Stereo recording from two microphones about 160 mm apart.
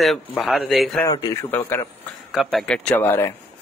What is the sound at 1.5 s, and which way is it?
Speech, 10° left (ahead or behind).